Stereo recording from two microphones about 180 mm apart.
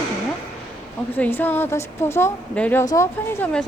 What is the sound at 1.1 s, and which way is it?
Speech, 10° left (ahead or behind).